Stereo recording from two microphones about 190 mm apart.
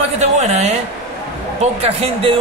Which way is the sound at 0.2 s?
35° right (ahead or behind).